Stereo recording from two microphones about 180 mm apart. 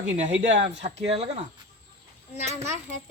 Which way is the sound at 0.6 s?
35° right (ahead or behind).